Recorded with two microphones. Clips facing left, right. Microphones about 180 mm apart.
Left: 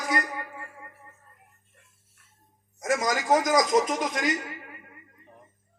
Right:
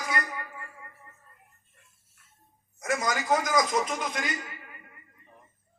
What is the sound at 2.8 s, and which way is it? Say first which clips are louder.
Speech: left 3 dB; 40° left (ahead or behind).